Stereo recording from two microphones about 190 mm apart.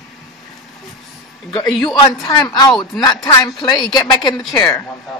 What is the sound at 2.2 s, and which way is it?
A woman's voice, 20° left (ahead or behind).